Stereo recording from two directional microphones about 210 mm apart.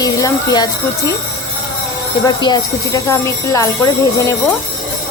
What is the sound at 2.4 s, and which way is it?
Speech, 20° left (ahead or behind).